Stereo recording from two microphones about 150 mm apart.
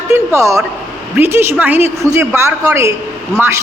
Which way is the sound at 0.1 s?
20° right (ahead or behind).